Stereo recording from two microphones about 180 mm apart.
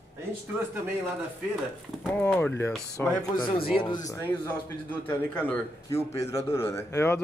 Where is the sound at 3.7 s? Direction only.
30° left (ahead or behind).